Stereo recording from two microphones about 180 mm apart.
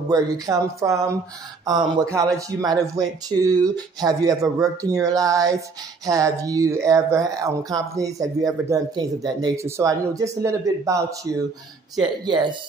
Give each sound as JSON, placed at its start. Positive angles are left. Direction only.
{"t": 0.1, "sound": "speech", "side_deg": -20}